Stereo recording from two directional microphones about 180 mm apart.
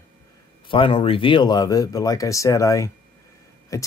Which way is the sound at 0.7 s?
30° left (ahead or behind).